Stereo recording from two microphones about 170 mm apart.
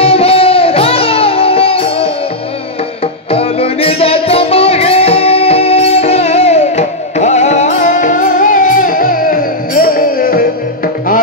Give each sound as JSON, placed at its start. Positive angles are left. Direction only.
{"t": 0.0, "sound": "music", "side_deg": 35}